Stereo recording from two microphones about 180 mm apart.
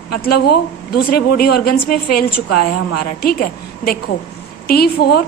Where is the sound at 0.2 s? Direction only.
60° left (ahead or behind).